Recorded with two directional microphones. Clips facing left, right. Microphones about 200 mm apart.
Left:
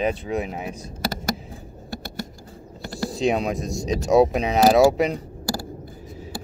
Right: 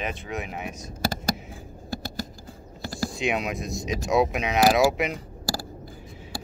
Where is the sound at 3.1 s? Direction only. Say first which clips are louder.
Left 7 dB; 35° left (ahead or behind).